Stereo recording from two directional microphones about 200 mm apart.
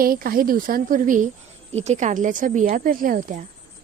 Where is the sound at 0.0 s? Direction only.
45° right (ahead or behind).